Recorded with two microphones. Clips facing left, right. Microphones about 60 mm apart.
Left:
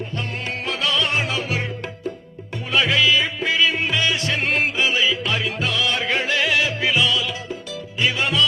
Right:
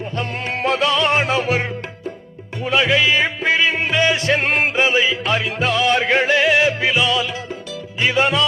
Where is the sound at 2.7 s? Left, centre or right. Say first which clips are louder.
Right 2 dB; right.